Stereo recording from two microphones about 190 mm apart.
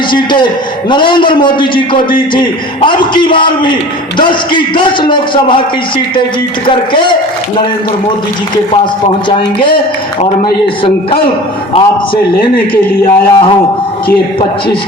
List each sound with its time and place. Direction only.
0.1 s a man's voice: 25° left (ahead or behind)
6.7 s a man's voice: 25° left (ahead or behind)
9.3 s a man's voice: 25° left (ahead or behind)